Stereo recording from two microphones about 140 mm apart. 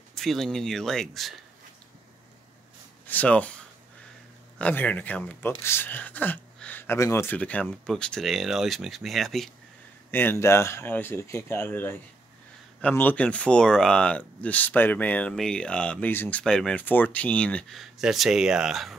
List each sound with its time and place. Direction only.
0.1 s speech: centre (ahead or behind)
3.1 s speech: 10° left (ahead or behind)
10.1 s speech: 15° left (ahead or behind); by 18.9 s centre (ahead or behind)